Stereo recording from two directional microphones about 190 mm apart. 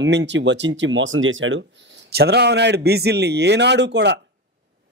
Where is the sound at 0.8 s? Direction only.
85° right.